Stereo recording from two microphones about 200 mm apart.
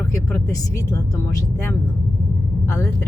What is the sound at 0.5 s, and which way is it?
Speech, 15° left (ahead or behind).